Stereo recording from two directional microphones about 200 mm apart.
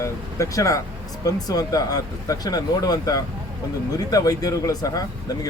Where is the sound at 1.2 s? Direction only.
20° left (ahead or behind).